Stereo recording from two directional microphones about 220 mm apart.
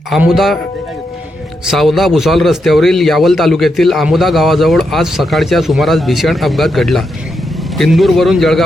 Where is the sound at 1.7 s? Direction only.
Centre (ahead or behind).